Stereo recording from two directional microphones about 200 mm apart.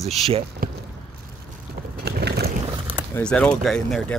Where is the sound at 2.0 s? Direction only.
55° right (ahead or behind).